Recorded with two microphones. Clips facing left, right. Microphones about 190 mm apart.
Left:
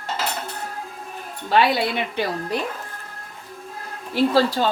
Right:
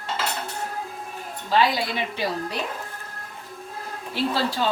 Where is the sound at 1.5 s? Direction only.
60° left (ahead or behind).